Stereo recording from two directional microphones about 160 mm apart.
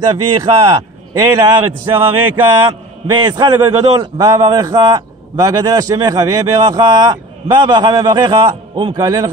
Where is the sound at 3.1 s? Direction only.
25° right (ahead or behind).